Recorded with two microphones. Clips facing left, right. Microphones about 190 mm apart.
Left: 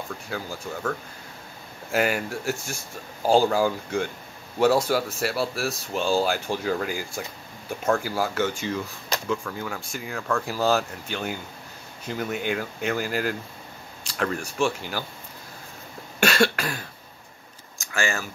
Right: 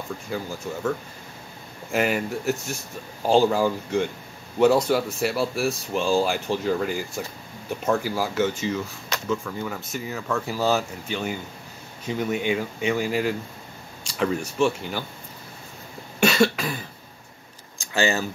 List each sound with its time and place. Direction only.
0.3 s speech: centre (ahead or behind)
1.9 s speech: centre (ahead or behind)
16.3 s cough: 5° right (ahead or behind)
17.9 s speech: 20° right (ahead or behind)